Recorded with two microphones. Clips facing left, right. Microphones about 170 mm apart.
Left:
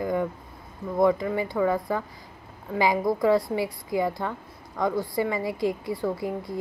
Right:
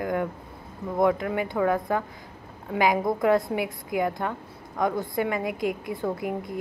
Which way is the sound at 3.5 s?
15° right (ahead or behind).